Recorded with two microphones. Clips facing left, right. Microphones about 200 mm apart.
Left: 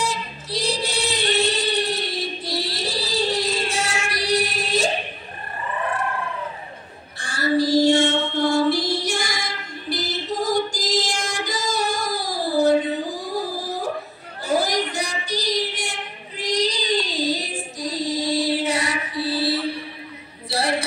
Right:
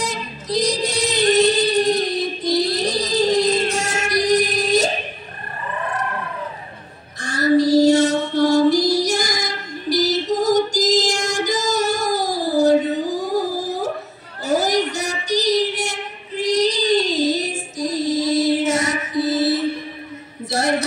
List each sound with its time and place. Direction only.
0.0 s female singing: 40° right (ahead or behind)
7.2 s child singing: 40° right (ahead or behind)
20.4 s a sound: 45° right (ahead or behind)